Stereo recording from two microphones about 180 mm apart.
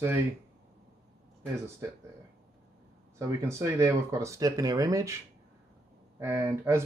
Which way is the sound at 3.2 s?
15° right (ahead or behind).